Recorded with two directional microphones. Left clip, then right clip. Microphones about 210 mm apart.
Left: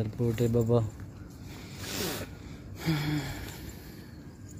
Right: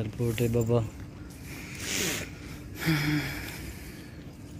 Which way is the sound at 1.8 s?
40° left (ahead or behind).